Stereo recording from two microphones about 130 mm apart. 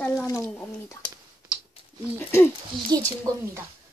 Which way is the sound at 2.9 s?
30° right (ahead or behind).